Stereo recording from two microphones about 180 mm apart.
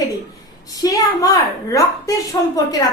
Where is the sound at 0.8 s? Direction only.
20° left (ahead or behind).